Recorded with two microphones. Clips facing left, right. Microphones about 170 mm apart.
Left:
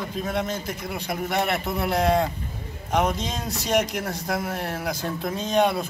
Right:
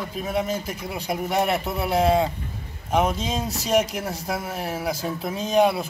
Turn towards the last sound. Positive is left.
turn(degrees=-5)  # may be behind; listen again after turning